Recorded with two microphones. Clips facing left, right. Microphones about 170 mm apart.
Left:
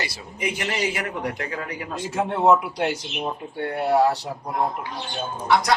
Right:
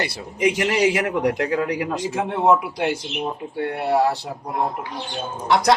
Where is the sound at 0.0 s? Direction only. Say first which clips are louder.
Right 8 dB; 90° right.